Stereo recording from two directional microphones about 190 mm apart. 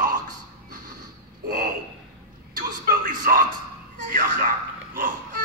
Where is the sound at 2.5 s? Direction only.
45° right (ahead or behind).